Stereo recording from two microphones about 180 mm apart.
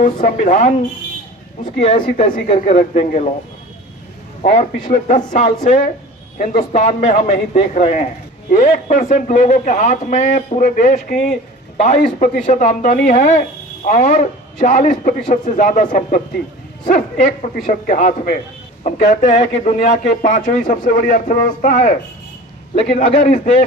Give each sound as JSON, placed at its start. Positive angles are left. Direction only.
{"t": 0.0, "sound": "a man's voice", "side_deg": 45}
{"t": 4.4, "sound": "a man's voice", "side_deg": 40}